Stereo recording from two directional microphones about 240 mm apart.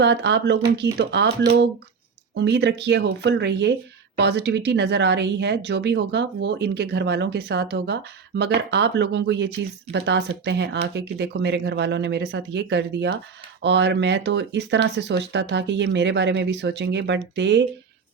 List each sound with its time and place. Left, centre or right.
0.0 s speech: right